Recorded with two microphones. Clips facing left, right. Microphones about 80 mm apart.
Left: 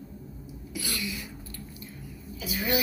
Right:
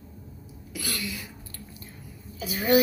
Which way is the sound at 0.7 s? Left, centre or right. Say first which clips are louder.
Right 1 dB; right.